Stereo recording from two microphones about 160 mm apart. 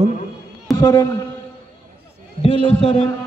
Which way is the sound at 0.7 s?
20° left (ahead or behind).